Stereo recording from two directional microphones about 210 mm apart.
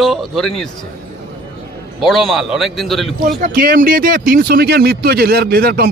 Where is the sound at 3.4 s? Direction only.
45° right (ahead or behind).